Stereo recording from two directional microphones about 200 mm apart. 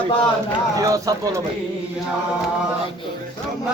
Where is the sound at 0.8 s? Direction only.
15° right (ahead or behind).